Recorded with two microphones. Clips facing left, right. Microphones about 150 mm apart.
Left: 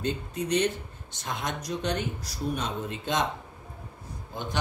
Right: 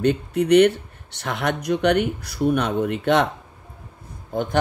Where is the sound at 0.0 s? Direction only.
70° right (ahead or behind).